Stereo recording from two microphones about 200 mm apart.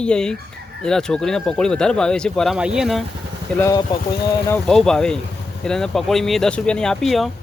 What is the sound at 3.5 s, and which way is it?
Speech, 15° left (ahead or behind).